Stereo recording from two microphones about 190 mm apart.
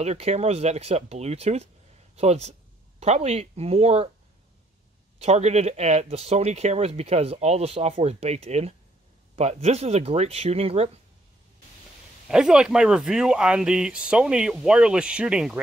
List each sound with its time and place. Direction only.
0.0 s speech: 35° right (ahead or behind)
5.2 s speech: 35° right (ahead or behind)
12.3 s speech: 5° right (ahead or behind)